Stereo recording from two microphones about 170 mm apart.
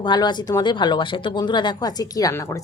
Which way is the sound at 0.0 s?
25° left (ahead or behind).